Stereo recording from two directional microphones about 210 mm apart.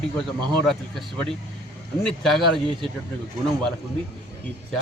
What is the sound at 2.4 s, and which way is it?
Speech, 25° right (ahead or behind).